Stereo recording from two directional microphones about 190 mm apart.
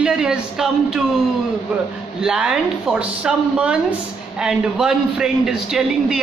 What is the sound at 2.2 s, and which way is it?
A man's voice, 5° right (ahead or behind).